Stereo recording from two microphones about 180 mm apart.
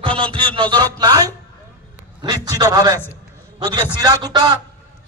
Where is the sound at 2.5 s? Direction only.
20° right (ahead or behind).